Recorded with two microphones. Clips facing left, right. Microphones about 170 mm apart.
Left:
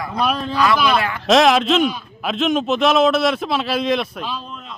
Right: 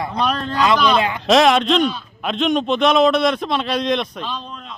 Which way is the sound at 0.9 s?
20° right (ahead or behind).